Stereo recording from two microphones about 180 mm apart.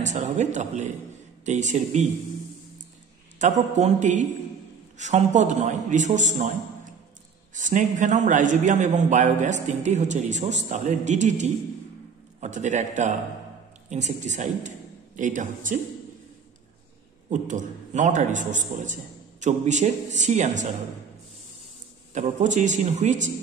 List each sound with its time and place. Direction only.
0.0 s a man's voice: 40° right (ahead or behind)
3.3 s a man's voice: 40° right (ahead or behind)
7.5 s a man's voice: 45° right (ahead or behind)
17.3 s a man's voice: 45° right (ahead or behind)
22.1 s a man's voice: 40° right (ahead or behind)